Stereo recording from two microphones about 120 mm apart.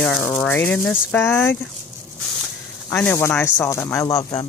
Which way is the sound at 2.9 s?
20° left (ahead or behind).